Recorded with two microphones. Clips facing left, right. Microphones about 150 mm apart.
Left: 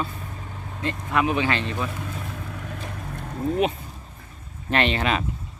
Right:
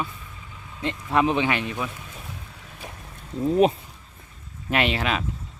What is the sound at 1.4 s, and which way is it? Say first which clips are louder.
Speech: even; 15° right (ahead or behind).